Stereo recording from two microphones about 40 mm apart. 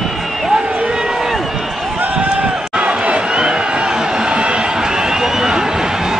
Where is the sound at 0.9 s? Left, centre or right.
Centre.